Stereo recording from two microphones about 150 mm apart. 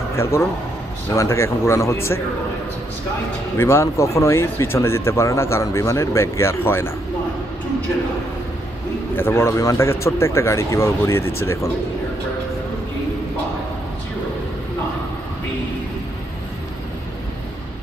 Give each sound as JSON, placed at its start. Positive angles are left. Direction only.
{"t": 0.1, "sound": "a man's voice", "side_deg": 20}
{"t": 3.5, "sound": "speech", "side_deg": 15}
{"t": 9.1, "sound": "speech", "side_deg": 15}